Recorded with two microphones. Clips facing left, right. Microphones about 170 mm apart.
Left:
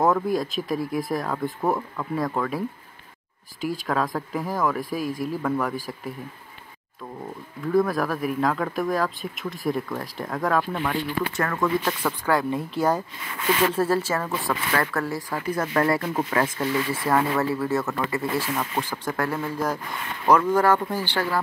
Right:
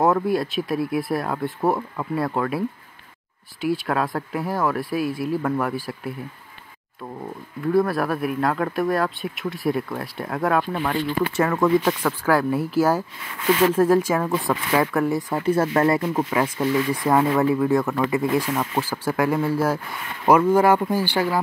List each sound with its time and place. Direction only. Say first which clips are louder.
0.0 s speech: right 2 dB; 5° right (ahead or behind)
3.8 s speech: right 1 dB; 5° right (ahead or behind)
5.0 s speech: right 2 dB; 45° left (ahead or behind)
5.3 s speech: right 1 dB; 5° right (ahead or behind)
7.6 s speech: right 2 dB; 5° right (ahead or behind)
10.8 s speech: right 3 dB; 15° right (ahead or behind)
12.3 s speech: right 4 dB; 5° right (ahead or behind); by 16.0 s 25° right (ahead or behind)
16.0 s speech: right 2 dB; 10° right (ahead or behind)